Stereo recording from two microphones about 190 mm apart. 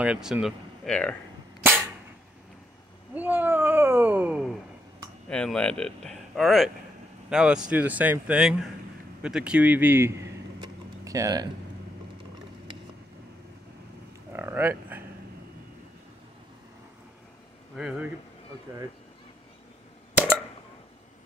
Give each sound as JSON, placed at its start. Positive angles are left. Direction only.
{"t": 0.0, "sound": "speech", "side_deg": -5}
{"t": 3.2, "sound": "cat", "side_deg": -10}
{"t": 5.3, "sound": "a man's voice", "side_deg": 5}
{"t": 10.6, "sound": "a sound", "side_deg": -20}
{"t": 14.3, "sound": "a sound", "side_deg": -10}
{"t": 17.7, "sound": "speech", "side_deg": -5}